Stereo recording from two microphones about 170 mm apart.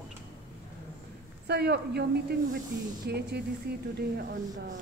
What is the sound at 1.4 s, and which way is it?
A woman's voice, 75° right (ahead or behind).